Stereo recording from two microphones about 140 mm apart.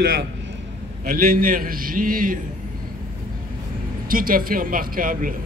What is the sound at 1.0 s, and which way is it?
Speech, 90° right.